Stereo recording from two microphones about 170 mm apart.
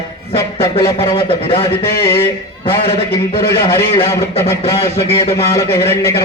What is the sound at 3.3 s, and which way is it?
A man's voice, 30° left (ahead or behind).